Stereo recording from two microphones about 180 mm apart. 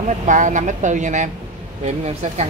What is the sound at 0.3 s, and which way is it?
Speech, 45° right (ahead or behind).